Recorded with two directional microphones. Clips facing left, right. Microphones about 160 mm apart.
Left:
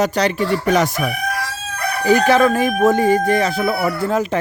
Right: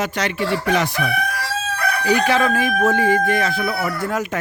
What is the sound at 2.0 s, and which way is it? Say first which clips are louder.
Speech: left 5 dB; 40° left (ahead or behind).